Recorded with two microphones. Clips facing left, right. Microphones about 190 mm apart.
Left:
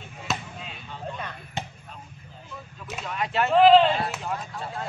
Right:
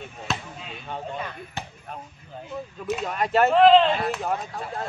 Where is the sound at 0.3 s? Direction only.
Centre (ahead or behind).